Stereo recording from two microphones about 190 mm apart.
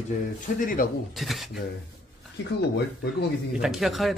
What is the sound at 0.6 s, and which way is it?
Speech, 45° left (ahead or behind).